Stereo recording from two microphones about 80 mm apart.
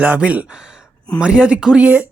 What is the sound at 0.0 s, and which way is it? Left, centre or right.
Speech, centre.